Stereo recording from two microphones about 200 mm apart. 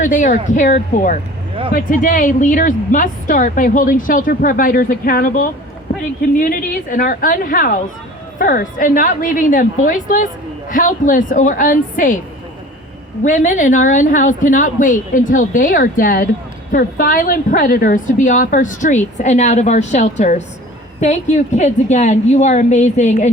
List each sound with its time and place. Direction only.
0.0 s a woman's voice: 40° left (ahead or behind)
13.2 s a woman's voice: 40° left (ahead or behind)